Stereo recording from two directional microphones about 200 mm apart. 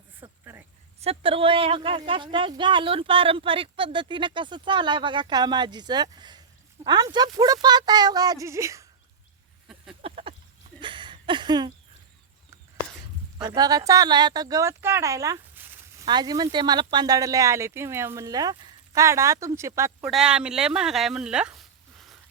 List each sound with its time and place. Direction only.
0.2 s a sound: 10° right (ahead or behind)
1.0 s speech: 25° right (ahead or behind)
10.0 s a sound: 30° right (ahead or behind)
13.4 s speech: 20° right (ahead or behind)
16.0 s speech: 20° right (ahead or behind)
20.0 s speech: 5° right (ahead or behind)